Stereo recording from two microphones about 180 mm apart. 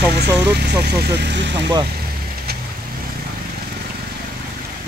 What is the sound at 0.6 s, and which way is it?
Speech, 65° right (ahead or behind).